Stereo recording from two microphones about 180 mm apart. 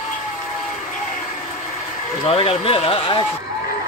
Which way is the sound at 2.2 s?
30° left (ahead or behind).